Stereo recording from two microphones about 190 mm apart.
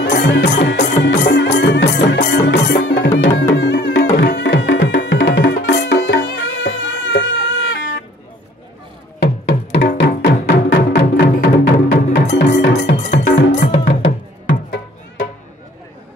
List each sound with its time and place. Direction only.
0.0 s music: 65° left (ahead or behind)
9.2 s music: 60° left (ahead or behind)
13.2 s music: 50° left (ahead or behind); by 15.2 s 75° left (ahead or behind)